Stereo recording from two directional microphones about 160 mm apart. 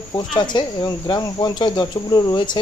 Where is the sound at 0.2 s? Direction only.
25° left (ahead or behind).